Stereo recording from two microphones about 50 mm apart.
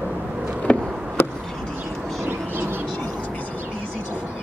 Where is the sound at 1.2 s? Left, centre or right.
Left.